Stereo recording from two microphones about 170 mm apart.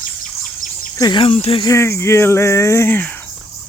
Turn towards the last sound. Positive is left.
turn(degrees=15)  # may be behind; listen again after turning